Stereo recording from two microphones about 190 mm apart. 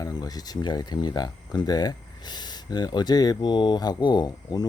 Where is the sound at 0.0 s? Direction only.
20° left (ahead or behind).